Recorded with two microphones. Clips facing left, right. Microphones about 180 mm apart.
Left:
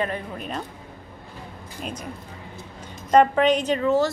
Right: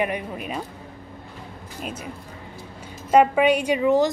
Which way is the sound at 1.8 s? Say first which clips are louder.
Even; 5° right (ahead or behind).